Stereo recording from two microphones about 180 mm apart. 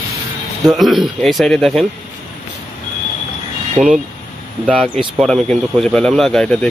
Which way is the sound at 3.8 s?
5° right (ahead or behind).